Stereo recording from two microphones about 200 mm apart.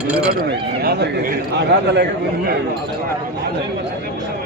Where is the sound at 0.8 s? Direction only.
55° right (ahead or behind).